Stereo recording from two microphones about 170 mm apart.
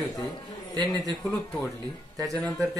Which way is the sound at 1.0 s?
10° left (ahead or behind).